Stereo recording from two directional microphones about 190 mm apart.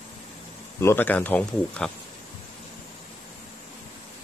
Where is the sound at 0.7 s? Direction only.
10° left (ahead or behind).